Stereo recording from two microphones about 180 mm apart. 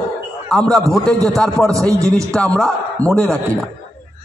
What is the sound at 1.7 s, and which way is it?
Speech, 20° right (ahead or behind).